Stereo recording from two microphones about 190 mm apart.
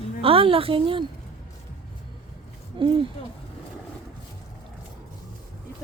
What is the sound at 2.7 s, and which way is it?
Speech, 25° right (ahead or behind).